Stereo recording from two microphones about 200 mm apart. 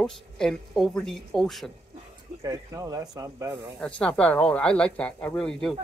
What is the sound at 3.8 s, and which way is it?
Speech, 5° left (ahead or behind).